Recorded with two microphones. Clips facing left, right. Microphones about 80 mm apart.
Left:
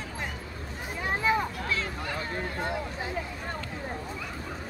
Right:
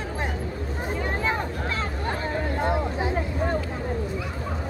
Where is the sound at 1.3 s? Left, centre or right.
Right.